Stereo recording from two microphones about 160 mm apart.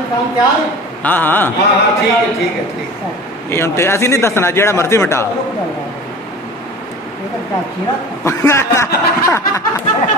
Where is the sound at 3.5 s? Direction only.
15° left (ahead or behind).